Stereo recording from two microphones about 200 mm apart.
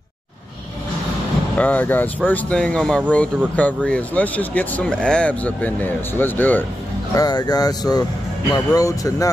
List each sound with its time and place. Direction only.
1.6 s speech: 10° left (ahead or behind)
7.2 s speech: 20° left (ahead or behind)